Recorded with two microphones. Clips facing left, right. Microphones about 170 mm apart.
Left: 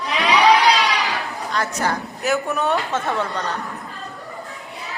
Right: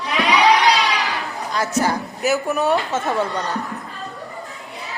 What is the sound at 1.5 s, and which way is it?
Speech, 5° right (ahead or behind).